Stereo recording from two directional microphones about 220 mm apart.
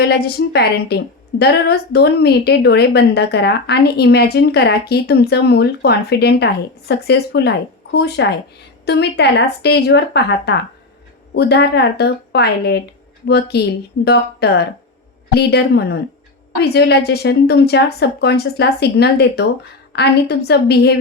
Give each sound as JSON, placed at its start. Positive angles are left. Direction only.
{"t": 0.0, "sound": "a woman's voice", "side_deg": 45}